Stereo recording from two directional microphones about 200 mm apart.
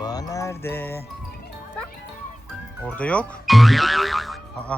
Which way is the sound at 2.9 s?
5° left (ahead or behind).